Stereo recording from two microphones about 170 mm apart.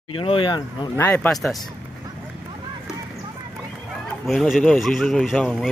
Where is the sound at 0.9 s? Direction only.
15° left (ahead or behind).